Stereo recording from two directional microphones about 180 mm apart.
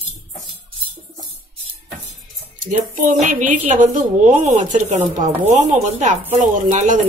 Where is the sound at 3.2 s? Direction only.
45° right (ahead or behind).